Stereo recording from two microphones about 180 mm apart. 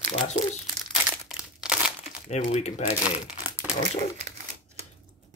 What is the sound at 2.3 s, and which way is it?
Speech, 40° left (ahead or behind).